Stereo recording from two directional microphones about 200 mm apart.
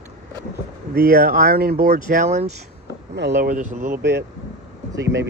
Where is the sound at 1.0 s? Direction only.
45° right (ahead or behind).